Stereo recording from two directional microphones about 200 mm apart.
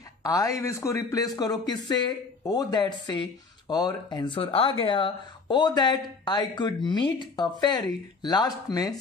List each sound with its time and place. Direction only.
0.2 s a man's voice: 15° left (ahead or behind)